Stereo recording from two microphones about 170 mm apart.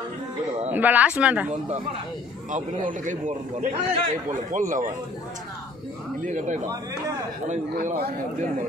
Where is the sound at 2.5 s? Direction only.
50° right (ahead or behind).